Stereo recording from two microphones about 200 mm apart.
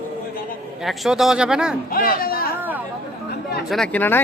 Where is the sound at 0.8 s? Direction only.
Centre (ahead or behind).